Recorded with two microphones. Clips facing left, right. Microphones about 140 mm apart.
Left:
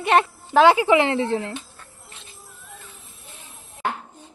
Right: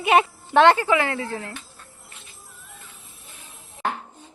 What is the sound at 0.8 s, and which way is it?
Speech, 20° left (ahead or behind).